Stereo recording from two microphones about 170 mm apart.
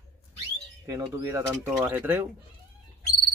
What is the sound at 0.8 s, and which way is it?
A man's voice, 20° right (ahead or behind).